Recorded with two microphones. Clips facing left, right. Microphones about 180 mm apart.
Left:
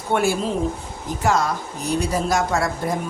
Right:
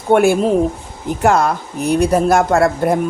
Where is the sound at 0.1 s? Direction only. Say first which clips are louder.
Right 9 dB; 55° right (ahead or behind).